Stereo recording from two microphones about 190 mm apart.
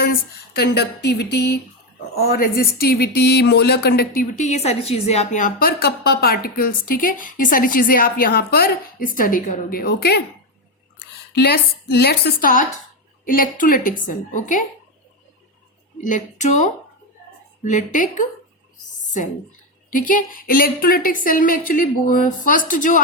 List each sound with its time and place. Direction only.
0.0 s a woman's voice: 55° left (ahead or behind)
16.0 s a woman's voice: 40° left (ahead or behind)
19.9 s speech: 45° left (ahead or behind)